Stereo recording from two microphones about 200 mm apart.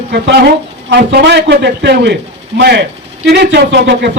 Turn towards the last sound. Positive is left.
turn(degrees=-55)  # may be behind; listen again after turning